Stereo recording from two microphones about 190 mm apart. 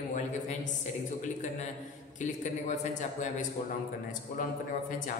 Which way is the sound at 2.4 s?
40° left (ahead or behind).